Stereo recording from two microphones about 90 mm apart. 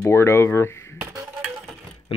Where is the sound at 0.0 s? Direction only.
30° left (ahead or behind).